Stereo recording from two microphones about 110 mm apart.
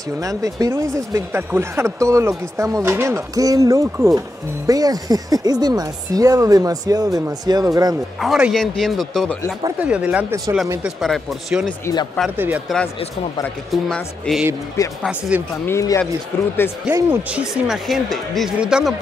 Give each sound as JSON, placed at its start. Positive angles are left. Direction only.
{"t": 0.2, "sound": "speech", "side_deg": -30}
{"t": 8.2, "sound": "speech", "side_deg": -5}
{"t": 9.8, "sound": "speech", "side_deg": -10}
{"t": 12.4, "sound": "speech", "side_deg": -15}
{"t": 13.7, "sound": "speech", "side_deg": 5}
{"t": 15.0, "sound": "speech", "side_deg": -10}
{"t": 15.6, "sound": "speech", "side_deg": 25}
{"t": 16.9, "sound": "speech", "side_deg": -10}